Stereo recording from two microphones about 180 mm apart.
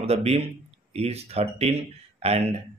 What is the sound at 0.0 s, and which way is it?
Speech, 35° right (ahead or behind).